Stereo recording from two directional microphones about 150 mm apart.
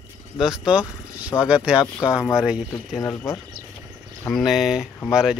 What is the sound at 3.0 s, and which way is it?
Speech, 15° left (ahead or behind).